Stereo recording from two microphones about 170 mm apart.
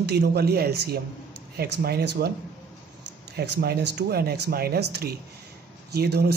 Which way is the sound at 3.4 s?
65° right (ahead or behind).